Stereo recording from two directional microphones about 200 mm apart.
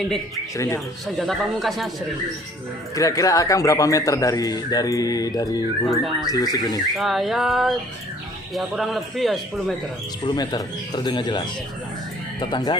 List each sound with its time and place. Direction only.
0.0 s a man's voice: centre (ahead or behind)
0.5 s a man's voice: 15° left (ahead or behind)
1.2 s a man's voice: centre (ahead or behind)
2.9 s a man's voice: 15° left (ahead or behind)
6.9 s a man's voice: centre (ahead or behind)
10.2 s speech: 20° left (ahead or behind)